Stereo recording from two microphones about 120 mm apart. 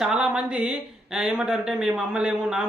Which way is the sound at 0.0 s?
5° right (ahead or behind).